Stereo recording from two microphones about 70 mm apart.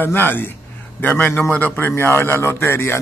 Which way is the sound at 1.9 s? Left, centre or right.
Left.